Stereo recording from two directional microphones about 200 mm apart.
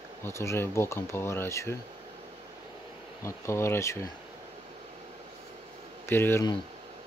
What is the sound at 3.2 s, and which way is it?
Speech, 15° left (ahead or behind).